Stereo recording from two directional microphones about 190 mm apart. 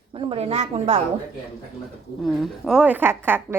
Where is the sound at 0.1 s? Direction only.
30° right (ahead or behind).